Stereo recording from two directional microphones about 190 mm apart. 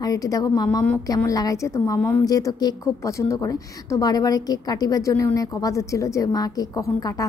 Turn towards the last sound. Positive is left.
turn(degrees=15)  # may be behind; listen again after turning